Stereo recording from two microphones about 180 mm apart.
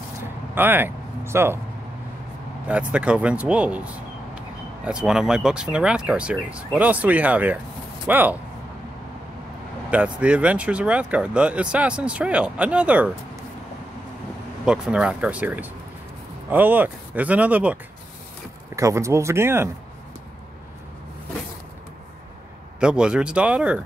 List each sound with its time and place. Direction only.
0.6 s speech: 10° right (ahead or behind)
2.7 s speech: 5° right (ahead or behind)
9.8 s speech: 5° right (ahead or behind)
14.6 s speech: 5° right (ahead or behind)
18.8 s speech: 15° right (ahead or behind)
22.8 s speech: 5° right (ahead or behind)